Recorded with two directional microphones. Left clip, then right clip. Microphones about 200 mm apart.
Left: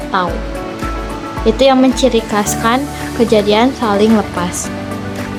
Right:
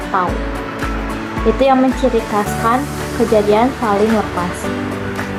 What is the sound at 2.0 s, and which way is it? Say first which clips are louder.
Speech: left 2 dB; 35° left (ahead or behind).